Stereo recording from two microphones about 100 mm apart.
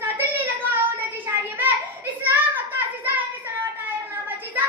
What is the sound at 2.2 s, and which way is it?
Child singing, 15° right (ahead or behind).